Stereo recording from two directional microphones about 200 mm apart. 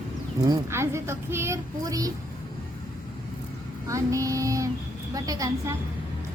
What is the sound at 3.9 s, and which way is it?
A woman's voice, 15° right (ahead or behind).